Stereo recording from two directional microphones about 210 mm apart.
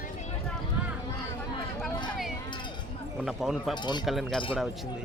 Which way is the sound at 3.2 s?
Centre (ahead or behind).